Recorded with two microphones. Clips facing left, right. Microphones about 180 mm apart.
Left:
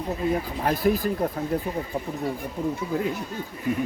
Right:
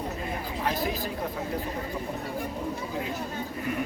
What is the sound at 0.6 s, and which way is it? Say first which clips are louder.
Speech: left 6 dB; 50° left (ahead or behind).